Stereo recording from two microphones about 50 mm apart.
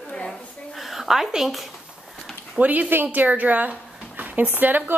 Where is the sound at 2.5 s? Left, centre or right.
Right.